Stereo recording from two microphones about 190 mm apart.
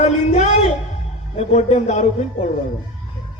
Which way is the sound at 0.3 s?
40° left (ahead or behind).